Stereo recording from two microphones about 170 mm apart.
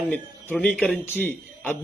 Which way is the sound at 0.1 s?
10° left (ahead or behind).